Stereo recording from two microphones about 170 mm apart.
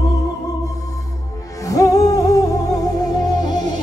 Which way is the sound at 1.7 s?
20° left (ahead or behind).